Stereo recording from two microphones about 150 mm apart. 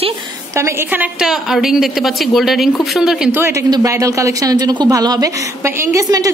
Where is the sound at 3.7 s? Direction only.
20° right (ahead or behind).